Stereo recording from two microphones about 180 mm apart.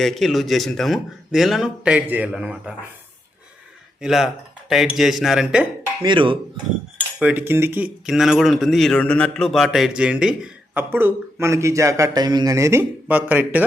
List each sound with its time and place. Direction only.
0.0 s speech: centre (ahead or behind)
4.0 s speech: centre (ahead or behind)
6.0 s cutlery: 25° right (ahead or behind)
7.2 s speech: 10° right (ahead or behind)